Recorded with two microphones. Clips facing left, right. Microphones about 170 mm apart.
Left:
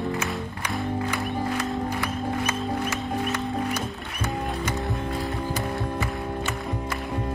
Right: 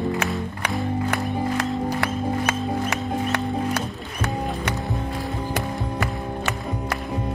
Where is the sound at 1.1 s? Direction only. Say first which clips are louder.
Right 3 dB; 65° right (ahead or behind).